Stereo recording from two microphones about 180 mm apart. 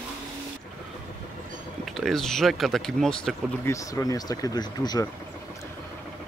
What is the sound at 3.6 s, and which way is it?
Speech, 15° left (ahead or behind).